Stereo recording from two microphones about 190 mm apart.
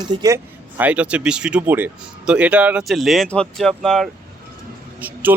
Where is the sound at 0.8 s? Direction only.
5° right (ahead or behind).